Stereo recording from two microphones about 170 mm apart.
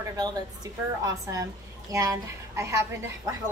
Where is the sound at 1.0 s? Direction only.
20° right (ahead or behind).